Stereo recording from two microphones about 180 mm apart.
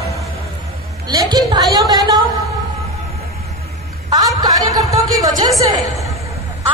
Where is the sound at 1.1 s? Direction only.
20° right (ahead or behind).